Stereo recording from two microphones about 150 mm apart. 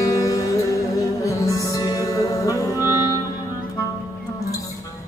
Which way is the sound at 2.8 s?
15° right (ahead or behind).